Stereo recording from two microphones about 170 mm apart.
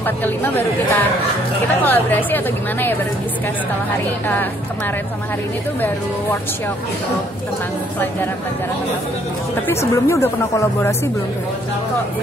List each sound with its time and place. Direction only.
0.0 s a woman's voice: 10° left (ahead or behind)
9.7 s a woman's voice: 15° left (ahead or behind)